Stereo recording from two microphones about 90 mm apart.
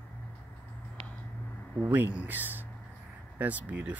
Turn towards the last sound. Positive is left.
turn(degrees=-15)  # may be behind; listen again after turning